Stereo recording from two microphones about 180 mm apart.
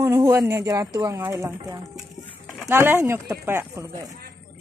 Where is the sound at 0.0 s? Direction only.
15° right (ahead or behind).